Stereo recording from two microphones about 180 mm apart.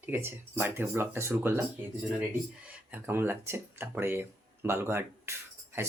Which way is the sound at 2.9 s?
10° right (ahead or behind).